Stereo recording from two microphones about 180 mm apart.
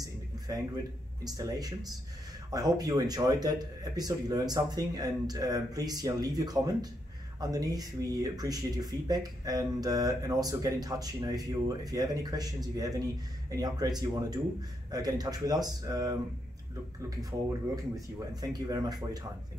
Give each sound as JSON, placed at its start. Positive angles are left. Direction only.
{"t": 0.5, "sound": "speech", "side_deg": -20}